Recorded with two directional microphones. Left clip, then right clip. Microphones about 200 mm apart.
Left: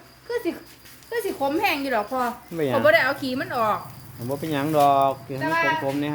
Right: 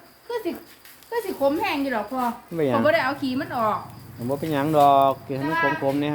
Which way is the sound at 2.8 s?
50° left (ahead or behind).